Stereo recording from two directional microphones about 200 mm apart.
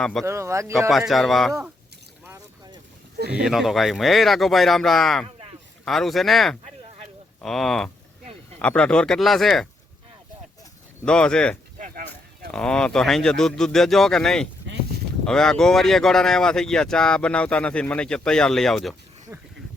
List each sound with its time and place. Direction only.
0.0 s speech: 5° left (ahead or behind)
0.3 s speech: 15° right (ahead or behind)
0.9 s speech: centre (ahead or behind)
2.2 s boat: 15° right (ahead or behind)
3.2 s speech: 55° right (ahead or behind)
3.4 s speech: centre (ahead or behind)
11.0 s speech: 5° left (ahead or behind)
11.8 s a sound: 45° right (ahead or behind)
12.5 s speech: 5° left (ahead or behind)
19.3 s speech: 15° right (ahead or behind)